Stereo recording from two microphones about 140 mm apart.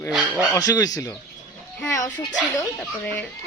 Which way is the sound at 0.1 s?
5° right (ahead or behind).